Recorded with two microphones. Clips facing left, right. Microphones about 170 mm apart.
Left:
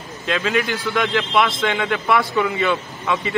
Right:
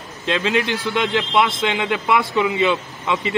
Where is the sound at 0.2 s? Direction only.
20° right (ahead or behind).